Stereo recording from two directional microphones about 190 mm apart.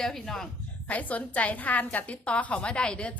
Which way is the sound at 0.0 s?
Centre (ahead or behind).